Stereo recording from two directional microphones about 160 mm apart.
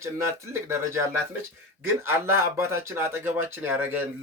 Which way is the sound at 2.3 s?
15° right (ahead or behind).